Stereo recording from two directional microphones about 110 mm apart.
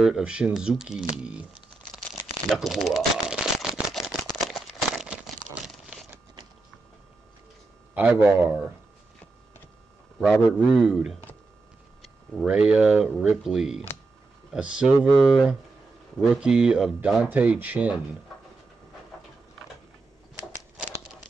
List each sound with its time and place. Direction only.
0.0 s speech: 5° right (ahead or behind)
2.5 s a sound: centre (ahead or behind)
7.9 s speech: 15° right (ahead or behind)
10.7 s speech: 5° right (ahead or behind)
15.2 s speech: 5° left (ahead or behind); by 17.9 s 15° right (ahead or behind)